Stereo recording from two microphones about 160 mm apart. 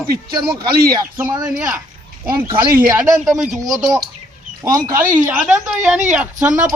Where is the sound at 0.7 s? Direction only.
70° right (ahead or behind).